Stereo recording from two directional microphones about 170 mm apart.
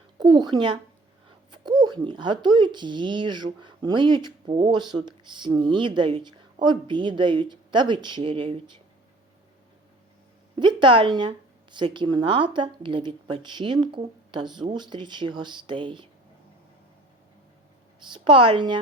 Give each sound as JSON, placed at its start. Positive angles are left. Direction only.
{"t": 0.2, "sound": "speech", "side_deg": -25}
{"t": 10.5, "sound": "speech", "side_deg": -25}
{"t": 18.1, "sound": "speech", "side_deg": -30}